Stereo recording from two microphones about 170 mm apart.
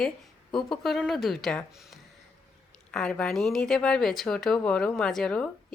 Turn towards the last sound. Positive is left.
turn(degrees=5)  # may be behind; listen again after turning